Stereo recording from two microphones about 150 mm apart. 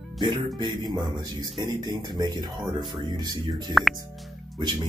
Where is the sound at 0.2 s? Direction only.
30° right (ahead or behind).